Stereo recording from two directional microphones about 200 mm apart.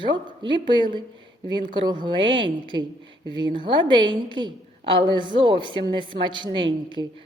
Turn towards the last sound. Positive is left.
turn(degrees=-25)  # may be behind; listen again after turning